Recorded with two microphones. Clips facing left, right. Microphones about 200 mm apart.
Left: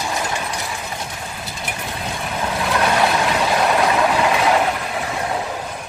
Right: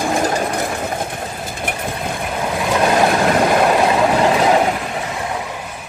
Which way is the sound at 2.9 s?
50° right (ahead or behind).